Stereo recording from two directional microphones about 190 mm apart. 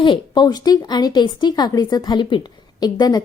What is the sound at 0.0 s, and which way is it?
A woman's voice, 25° left (ahead or behind).